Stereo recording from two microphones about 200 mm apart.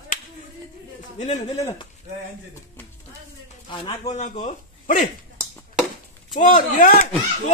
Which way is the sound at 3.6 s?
25° left (ahead or behind).